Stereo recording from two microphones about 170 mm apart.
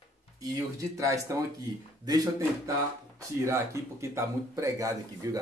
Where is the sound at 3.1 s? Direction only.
15° right (ahead or behind).